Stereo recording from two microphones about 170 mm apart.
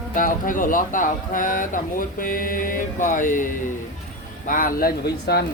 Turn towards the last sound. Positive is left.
turn(degrees=65)  # may be behind; listen again after turning